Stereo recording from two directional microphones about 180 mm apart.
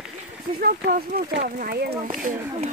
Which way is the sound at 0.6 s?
65° right (ahead or behind).